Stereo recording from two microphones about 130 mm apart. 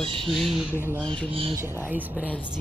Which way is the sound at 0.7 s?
15° right (ahead or behind).